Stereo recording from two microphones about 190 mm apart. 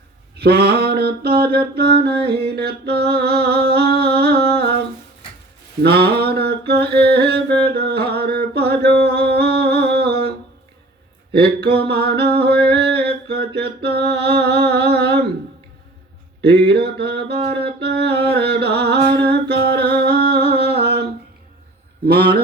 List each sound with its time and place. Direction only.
0.3 s mantra: 55° right (ahead or behind)
1.5 s music: 55° right (ahead or behind)
5.8 s mantra: 55° right (ahead or behind)
7.6 s a sound: 55° right (ahead or behind)
11.3 s a sound: 55° right (ahead or behind)
16.5 s music: 60° right (ahead or behind)
17.5 s a sound: 55° right (ahead or behind)
20.0 s humming: 55° right (ahead or behind)
22.0 s a man's voice: 55° right (ahead or behind)